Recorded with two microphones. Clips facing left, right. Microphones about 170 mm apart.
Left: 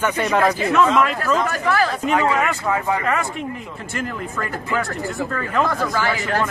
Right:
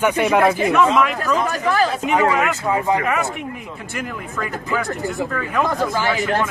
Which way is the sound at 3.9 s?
Centre (ahead or behind).